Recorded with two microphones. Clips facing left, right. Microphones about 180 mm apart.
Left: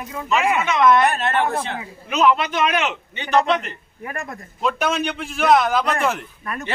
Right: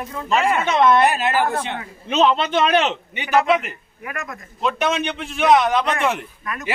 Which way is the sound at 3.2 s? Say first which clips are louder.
Right 1 dB; 5° right (ahead or behind).